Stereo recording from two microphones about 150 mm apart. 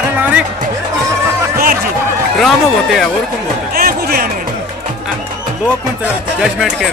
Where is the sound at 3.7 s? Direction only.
85° right.